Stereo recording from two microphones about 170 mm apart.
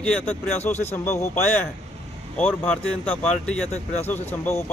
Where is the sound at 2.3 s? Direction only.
10° left (ahead or behind).